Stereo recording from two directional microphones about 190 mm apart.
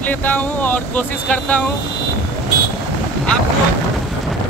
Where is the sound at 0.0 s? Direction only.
10° left (ahead or behind).